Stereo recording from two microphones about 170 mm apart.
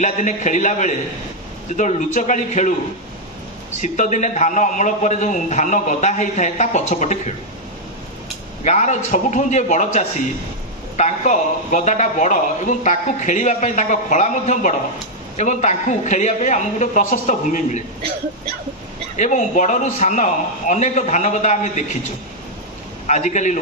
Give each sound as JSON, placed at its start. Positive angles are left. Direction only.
{"t": 0.0, "sound": "a man's voice", "side_deg": 45}
{"t": 3.8, "sound": "a man's voice", "side_deg": 45}
{"t": 8.6, "sound": "a man's voice", "side_deg": 45}
{"t": 19.1, "sound": "a man's voice", "side_deg": 45}
{"t": 23.0, "sound": "a man's voice", "side_deg": 45}